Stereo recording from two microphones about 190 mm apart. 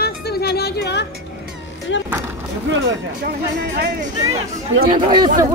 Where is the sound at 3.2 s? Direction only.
55° right (ahead or behind).